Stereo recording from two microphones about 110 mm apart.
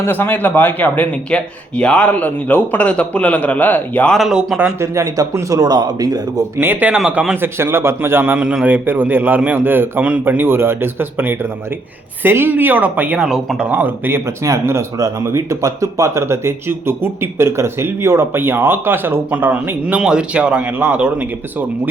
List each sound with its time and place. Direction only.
0.0 s speech: 20° left (ahead or behind)
4.1 s speech: 5° right (ahead or behind)
4.8 s speech: 30° right (ahead or behind)
6.6 s a man's voice: 15° right (ahead or behind)
7.4 s a man's voice: 25° right (ahead or behind); by 13.7 s 5° right (ahead or behind)
13.7 s a man's voice: 15° right (ahead or behind)
14.4 s speech: 25° right (ahead or behind)